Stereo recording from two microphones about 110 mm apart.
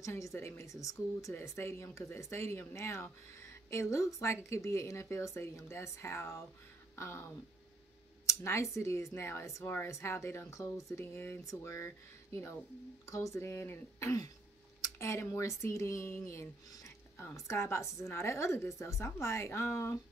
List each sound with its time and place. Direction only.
0.0 s speech: 25° left (ahead or behind)
8.3 s speech: 25° left (ahead or behind)